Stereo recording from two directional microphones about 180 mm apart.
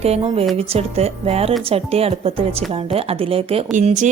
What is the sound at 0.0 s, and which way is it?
A woman's voice, 35° right (ahead or behind).